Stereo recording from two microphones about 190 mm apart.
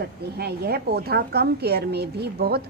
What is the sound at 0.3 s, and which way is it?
A woman's voice, 55° right (ahead or behind).